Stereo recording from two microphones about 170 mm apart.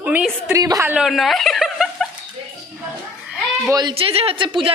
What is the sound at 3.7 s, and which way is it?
Speech, 30° right (ahead or behind).